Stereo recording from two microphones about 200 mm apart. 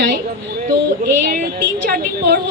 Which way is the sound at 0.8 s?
55° right (ahead or behind).